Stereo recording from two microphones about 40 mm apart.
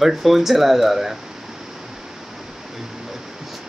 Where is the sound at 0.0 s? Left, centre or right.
Centre.